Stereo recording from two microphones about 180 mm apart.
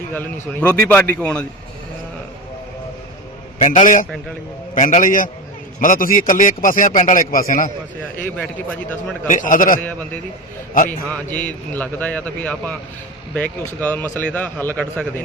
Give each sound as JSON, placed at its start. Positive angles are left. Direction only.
{"t": 0.1, "sound": "a man's voice", "side_deg": 10}
{"t": 3.6, "sound": "a man's voice", "side_deg": 45}
{"t": 9.2, "sound": "a man's voice", "side_deg": 45}
{"t": 10.8, "sound": "a man's voice", "side_deg": 10}